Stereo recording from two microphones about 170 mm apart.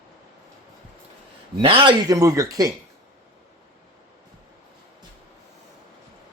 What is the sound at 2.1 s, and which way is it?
Speech, 20° right (ahead or behind).